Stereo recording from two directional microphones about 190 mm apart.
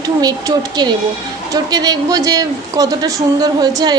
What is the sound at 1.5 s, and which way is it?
Speech, 20° right (ahead or behind).